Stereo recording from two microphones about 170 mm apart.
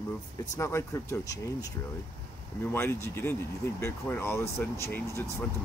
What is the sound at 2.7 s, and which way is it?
Speech, 15° left (ahead or behind).